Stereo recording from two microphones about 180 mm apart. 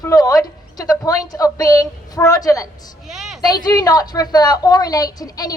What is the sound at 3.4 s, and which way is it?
A woman's voice, 20° left (ahead or behind).